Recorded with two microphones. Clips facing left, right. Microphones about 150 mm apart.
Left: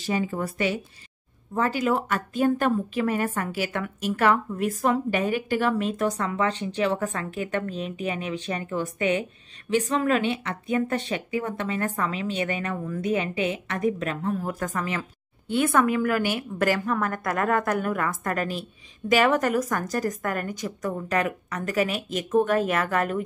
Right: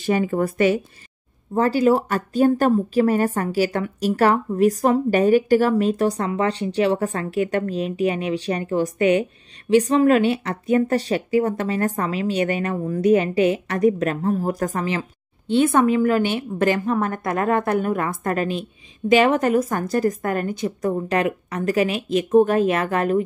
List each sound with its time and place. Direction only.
0.0 s speech: 60° right (ahead or behind)
1.5 s a woman's voice: 35° right (ahead or behind)